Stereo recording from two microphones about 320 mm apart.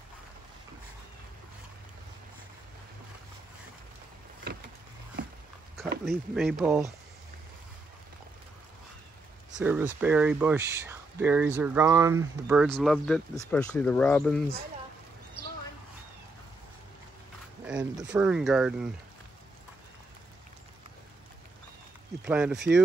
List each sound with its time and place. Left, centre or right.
6.0 s speech: centre
9.6 s speech: centre
17.6 s speech: centre
22.2 s speech: centre